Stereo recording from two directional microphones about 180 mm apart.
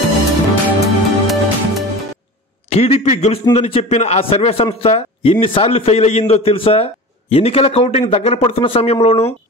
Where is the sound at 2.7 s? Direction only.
35° left (ahead or behind).